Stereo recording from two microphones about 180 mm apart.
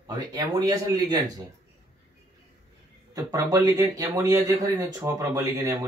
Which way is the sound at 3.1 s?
20° right (ahead or behind).